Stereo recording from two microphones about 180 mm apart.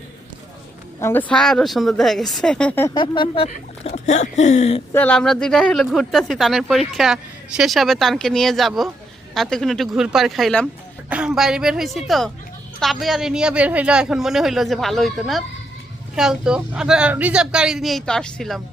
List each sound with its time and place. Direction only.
1.0 s speech: 10° left (ahead or behind)
2.9 s speech: 25° left (ahead or behind)
3.5 s speech: 40° left (ahead or behind)
4.9 s speech: 5° left (ahead or behind)